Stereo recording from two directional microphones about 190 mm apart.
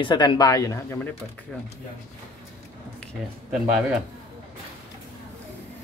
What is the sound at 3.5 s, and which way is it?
Speech, 5° right (ahead or behind).